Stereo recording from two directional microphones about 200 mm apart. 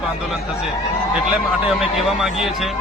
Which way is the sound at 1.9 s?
Centre (ahead or behind).